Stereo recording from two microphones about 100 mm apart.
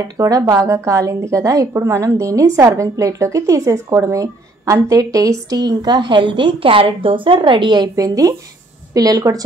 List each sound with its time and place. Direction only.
0.0 s speech: 35° right (ahead or behind)